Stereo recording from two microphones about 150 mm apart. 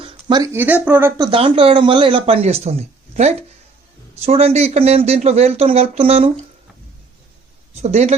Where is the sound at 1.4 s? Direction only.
40° right (ahead or behind).